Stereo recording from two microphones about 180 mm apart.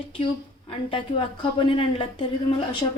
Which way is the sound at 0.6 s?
30° left (ahead or behind).